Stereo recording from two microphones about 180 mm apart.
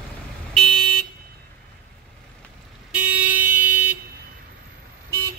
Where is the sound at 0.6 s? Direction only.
5° left (ahead or behind).